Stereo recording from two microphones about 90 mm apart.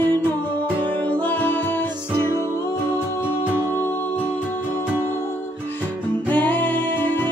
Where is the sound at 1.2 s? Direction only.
20° left (ahead or behind).